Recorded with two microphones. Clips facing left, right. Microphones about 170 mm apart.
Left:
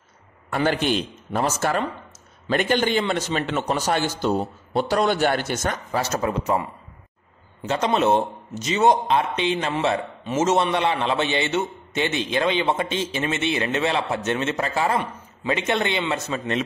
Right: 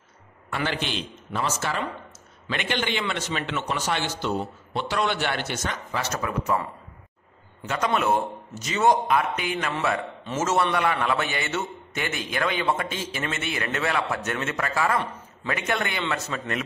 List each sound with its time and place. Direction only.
0.7 s a man's voice: 45° left (ahead or behind); by 16.6 s 25° left (ahead or behind)